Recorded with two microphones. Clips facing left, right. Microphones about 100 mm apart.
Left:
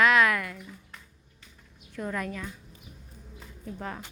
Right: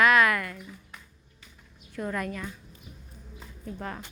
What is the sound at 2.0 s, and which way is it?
Speech, centre (ahead or behind).